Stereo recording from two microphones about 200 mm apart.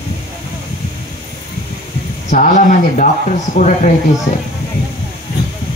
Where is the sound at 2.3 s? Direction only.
40° left (ahead or behind).